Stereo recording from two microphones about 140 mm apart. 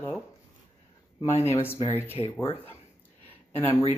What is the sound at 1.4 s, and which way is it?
Speech, 15° left (ahead or behind).